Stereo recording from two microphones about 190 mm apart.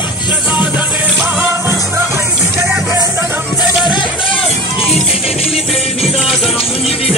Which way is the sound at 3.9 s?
25° left (ahead or behind).